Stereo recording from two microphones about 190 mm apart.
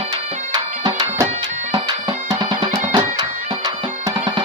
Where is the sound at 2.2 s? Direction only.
25° right (ahead or behind).